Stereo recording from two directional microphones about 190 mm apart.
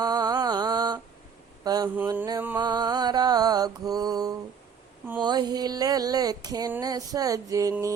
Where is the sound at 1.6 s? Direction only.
20° right (ahead or behind).